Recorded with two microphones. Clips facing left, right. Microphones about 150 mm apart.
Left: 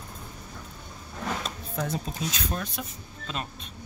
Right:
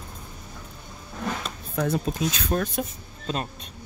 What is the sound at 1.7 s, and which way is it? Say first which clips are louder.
Speech: right 6 dB; 60° right (ahead or behind).